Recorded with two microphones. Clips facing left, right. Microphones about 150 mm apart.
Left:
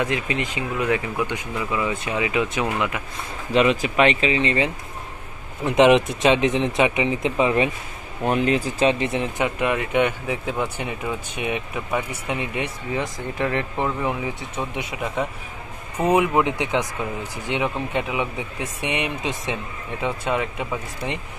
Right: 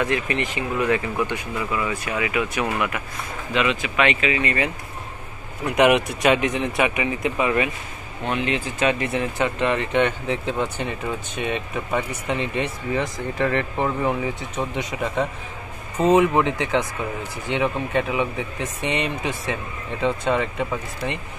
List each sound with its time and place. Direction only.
0.0 s speech: 15° left (ahead or behind)
3.5 s speech: 40° left (ahead or behind)
5.7 s speech: 25° left (ahead or behind)
8.3 s speech: 40° left (ahead or behind); by 21.2 s 15° left (ahead or behind)